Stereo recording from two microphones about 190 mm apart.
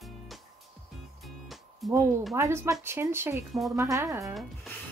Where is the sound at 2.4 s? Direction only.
15° right (ahead or behind).